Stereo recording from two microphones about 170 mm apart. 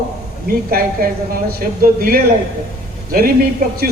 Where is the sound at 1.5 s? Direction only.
60° right (ahead or behind).